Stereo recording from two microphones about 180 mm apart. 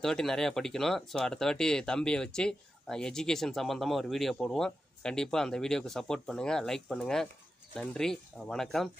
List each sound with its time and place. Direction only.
0.0 s speech: centre (ahead or behind)